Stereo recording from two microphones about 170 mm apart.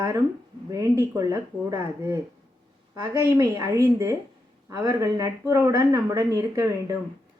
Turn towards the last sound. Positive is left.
turn(degrees=-20)  # may be behind; listen again after turning